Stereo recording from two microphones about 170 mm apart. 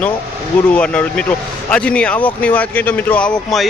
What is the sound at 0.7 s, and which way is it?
Speech, 5° left (ahead or behind).